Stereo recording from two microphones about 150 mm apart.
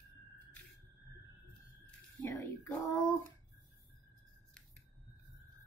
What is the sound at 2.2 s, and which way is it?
Speech, 15° left (ahead or behind).